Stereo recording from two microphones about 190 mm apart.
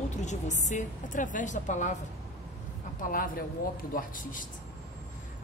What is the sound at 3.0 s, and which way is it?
Speech, 45° left (ahead or behind).